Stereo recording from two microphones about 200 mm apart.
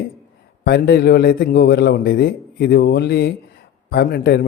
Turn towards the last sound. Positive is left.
turn(degrees=50)  # may be behind; listen again after turning